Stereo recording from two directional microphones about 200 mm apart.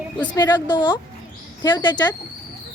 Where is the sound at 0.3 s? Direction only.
20° left (ahead or behind).